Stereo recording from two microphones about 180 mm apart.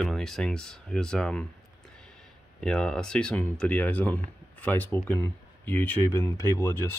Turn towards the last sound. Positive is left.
turn(degrees=10)  # may be behind; listen again after turning